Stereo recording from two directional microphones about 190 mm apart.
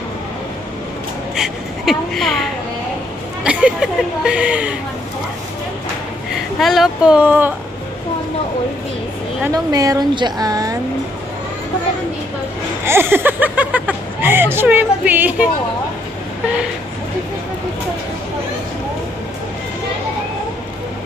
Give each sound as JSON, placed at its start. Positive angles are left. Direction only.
{"t": 1.3, "sound": "speech", "side_deg": 0}
{"t": 6.6, "sound": "speech", "side_deg": 0}
{"t": 9.5, "sound": "a woman's voice", "side_deg": -20}
{"t": 12.8, "sound": "speech", "side_deg": -10}